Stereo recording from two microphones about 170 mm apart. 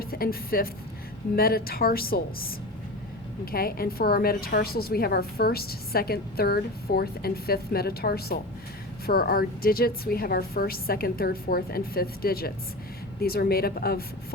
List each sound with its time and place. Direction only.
0.0 s a woman's voice: 60° left (ahead or behind)